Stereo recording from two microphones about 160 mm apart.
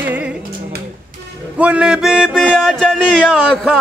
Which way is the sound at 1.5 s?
5° right (ahead or behind).